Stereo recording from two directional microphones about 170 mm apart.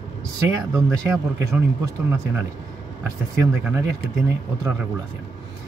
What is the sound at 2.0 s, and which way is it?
Speech, 15° right (ahead or behind).